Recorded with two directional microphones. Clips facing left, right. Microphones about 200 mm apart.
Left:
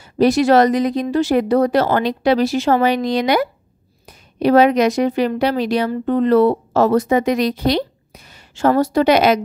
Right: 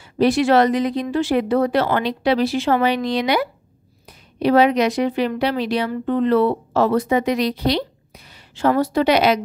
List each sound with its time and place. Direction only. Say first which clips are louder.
0.0 s speech: left 3 dB; 40° left (ahead or behind)